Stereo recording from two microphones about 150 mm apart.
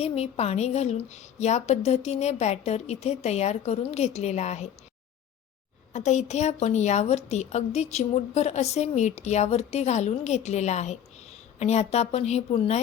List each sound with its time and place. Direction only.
0.0 s a woman's voice: 40° left (ahead or behind)
5.9 s a woman's voice: 50° left (ahead or behind)